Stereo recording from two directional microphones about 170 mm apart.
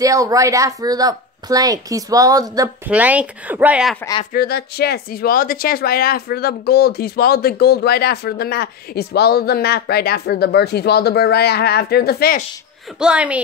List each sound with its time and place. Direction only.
0.0 s speech: 20° right (ahead or behind)
2.9 s speech: 10° right (ahead or behind)
4.3 s speech: 65° left (ahead or behind)
13.0 s speech: 5° right (ahead or behind)